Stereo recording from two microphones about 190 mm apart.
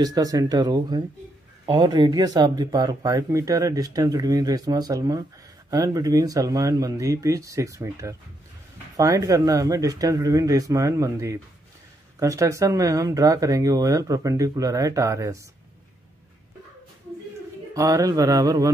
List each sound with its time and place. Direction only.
0.0 s speech: 20° right (ahead or behind)
17.7 s speech: 15° right (ahead or behind)